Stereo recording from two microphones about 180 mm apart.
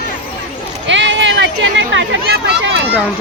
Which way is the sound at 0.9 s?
90° right.